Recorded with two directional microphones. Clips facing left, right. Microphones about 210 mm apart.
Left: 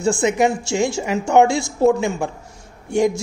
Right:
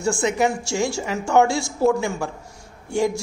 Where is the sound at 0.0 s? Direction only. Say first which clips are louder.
Left 3 dB; 20° left (ahead or behind).